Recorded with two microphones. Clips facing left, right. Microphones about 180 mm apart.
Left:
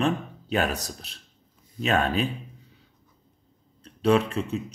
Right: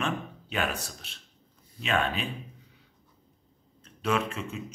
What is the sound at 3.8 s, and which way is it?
Speech, 35° left (ahead or behind).